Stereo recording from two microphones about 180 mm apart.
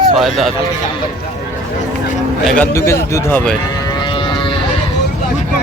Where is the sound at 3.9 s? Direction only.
25° left (ahead or behind).